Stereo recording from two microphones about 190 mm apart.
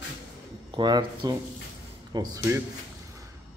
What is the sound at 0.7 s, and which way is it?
Speech, 25° right (ahead or behind).